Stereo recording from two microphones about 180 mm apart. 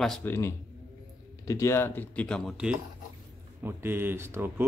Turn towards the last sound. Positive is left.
turn(degrees=-10)  # may be behind; listen again after turning